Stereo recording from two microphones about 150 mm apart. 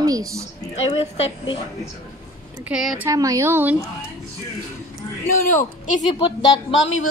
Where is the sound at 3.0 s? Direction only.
20° right (ahead or behind).